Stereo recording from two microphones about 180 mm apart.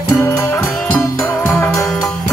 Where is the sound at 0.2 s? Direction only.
15° left (ahead or behind).